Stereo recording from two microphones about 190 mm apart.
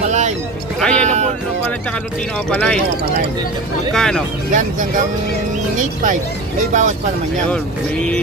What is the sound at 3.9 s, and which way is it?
Speech, 5° left (ahead or behind).